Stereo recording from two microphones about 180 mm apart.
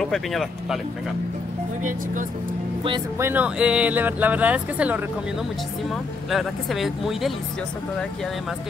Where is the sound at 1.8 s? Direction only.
45° right (ahead or behind).